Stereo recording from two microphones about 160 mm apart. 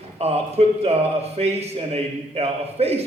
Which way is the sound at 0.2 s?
40° right (ahead or behind).